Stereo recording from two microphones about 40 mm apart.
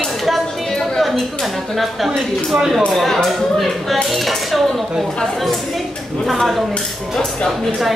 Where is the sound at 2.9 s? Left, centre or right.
Centre.